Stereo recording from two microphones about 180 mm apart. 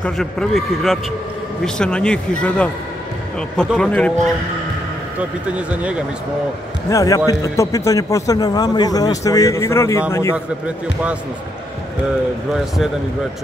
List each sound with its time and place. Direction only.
0.0 s a man's voice: 5° left (ahead or behind)
5.5 s speech: 5° right (ahead or behind)
6.9 s a man's voice: 20° left (ahead or behind)